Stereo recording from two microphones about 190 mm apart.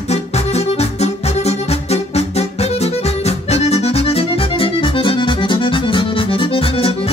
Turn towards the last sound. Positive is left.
turn(degrees=30)  # may be behind; listen again after turning